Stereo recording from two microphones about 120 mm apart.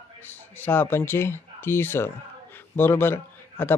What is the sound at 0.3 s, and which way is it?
A man's voice, 15° left (ahead or behind).